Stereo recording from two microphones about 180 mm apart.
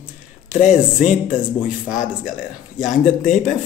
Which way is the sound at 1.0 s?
5° right (ahead or behind).